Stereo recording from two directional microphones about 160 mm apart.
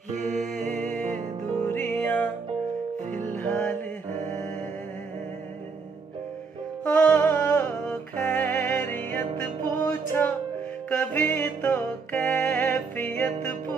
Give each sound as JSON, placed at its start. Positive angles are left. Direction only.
{"t": 0.1, "sound": "music", "side_deg": -50}
{"t": 0.7, "sound": "music", "side_deg": 5}
{"t": 3.3, "sound": "music", "side_deg": 10}
{"t": 6.8, "sound": "music", "side_deg": 10}